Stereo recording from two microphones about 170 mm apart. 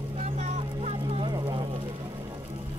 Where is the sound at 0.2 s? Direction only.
40° right (ahead or behind).